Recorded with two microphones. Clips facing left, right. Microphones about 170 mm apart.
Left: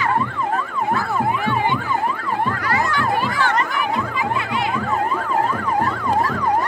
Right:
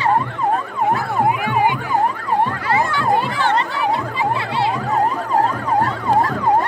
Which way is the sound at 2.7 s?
25° right (ahead or behind).